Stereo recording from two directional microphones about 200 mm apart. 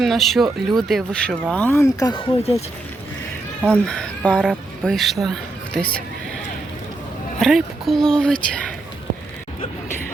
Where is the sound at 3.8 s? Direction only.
5° left (ahead or behind).